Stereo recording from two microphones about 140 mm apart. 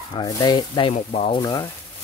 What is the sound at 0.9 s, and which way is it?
Sizzle, 45° left (ahead or behind).